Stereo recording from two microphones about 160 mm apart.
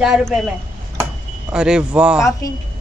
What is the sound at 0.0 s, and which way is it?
Speech, 5° right (ahead or behind).